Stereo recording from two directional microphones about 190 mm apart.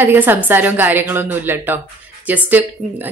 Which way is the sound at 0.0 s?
10° right (ahead or behind).